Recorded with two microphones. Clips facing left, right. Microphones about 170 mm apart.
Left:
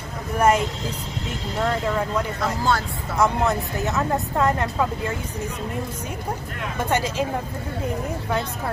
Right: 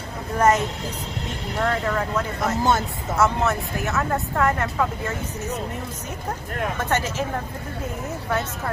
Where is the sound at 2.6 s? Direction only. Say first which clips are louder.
Right 2 dB; 20° right (ahead or behind).